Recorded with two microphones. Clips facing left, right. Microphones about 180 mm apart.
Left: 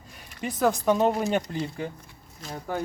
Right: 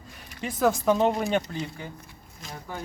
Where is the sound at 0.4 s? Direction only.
Centre (ahead or behind).